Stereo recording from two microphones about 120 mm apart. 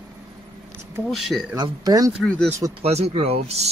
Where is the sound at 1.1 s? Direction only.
Centre (ahead or behind).